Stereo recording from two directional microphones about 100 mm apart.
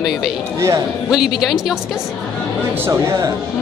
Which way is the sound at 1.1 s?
5° right (ahead or behind).